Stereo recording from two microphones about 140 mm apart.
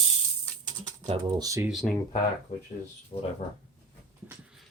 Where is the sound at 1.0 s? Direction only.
40° right (ahead or behind).